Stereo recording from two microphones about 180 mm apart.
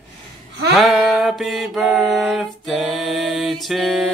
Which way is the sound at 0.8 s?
Centre (ahead or behind).